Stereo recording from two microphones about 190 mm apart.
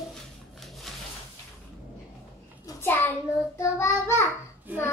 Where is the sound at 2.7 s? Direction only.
10° left (ahead or behind).